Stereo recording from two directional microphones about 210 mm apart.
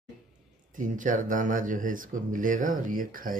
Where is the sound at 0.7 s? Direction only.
40° right (ahead or behind).